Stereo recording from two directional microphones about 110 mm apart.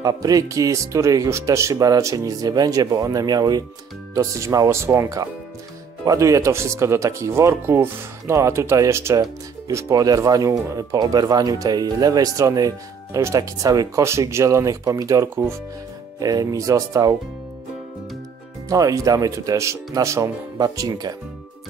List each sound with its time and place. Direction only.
0.0 s speech: 35° right (ahead or behind)
18.7 s speech: 30° right (ahead or behind)